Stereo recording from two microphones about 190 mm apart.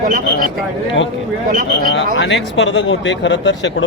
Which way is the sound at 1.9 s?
75° left (ahead or behind).